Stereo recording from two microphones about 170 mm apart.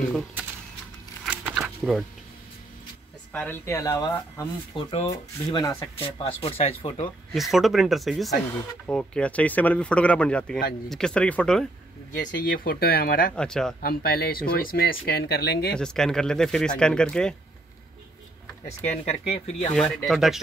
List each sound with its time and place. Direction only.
1.2 s a sound: 5° right (ahead or behind)
3.3 s speech: 15° left (ahead or behind)
4.7 s speech: 40° left (ahead or behind)
5.1 s speech: 25° left (ahead or behind)
7.3 s speech: centre (ahead or behind)
12.1 s speech: 55° left (ahead or behind)
13.4 s speech: 5° left (ahead or behind)
13.7 s speech: 60° left (ahead or behind)
15.0 s speech: 70° left (ahead or behind)
15.7 s speech: 5° left (ahead or behind)
19.0 s speech: 40° left (ahead or behind)
19.7 s speech: 5° left (ahead or behind)